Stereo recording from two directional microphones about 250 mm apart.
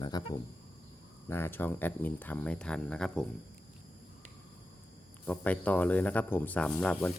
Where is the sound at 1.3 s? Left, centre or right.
Centre.